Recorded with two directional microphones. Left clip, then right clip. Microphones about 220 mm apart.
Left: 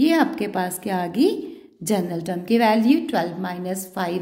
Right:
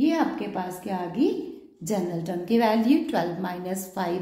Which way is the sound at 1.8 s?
40° left (ahead or behind).